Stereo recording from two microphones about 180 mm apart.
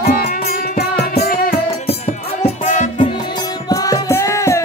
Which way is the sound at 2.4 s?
40° left (ahead or behind).